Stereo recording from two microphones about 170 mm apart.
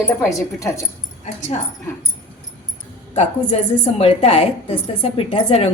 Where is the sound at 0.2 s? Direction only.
20° left (ahead or behind).